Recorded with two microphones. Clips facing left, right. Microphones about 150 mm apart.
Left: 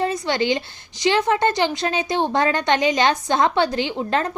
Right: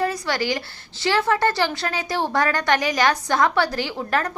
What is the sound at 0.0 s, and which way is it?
A woman's voice, 20° left (ahead or behind).